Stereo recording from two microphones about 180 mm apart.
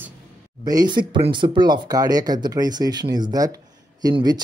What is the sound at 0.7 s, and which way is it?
Speech, 25° right (ahead or behind).